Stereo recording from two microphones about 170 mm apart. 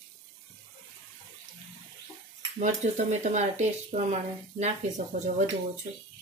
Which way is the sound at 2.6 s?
45° right (ahead or behind).